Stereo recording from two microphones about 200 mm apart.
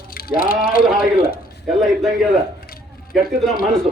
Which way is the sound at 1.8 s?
Centre (ahead or behind).